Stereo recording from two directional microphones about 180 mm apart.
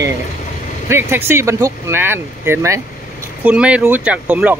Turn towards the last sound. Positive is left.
turn(degrees=-5)  # may be behind; listen again after turning